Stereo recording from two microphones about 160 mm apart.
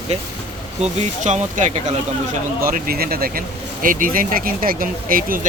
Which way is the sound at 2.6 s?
65° right (ahead or behind).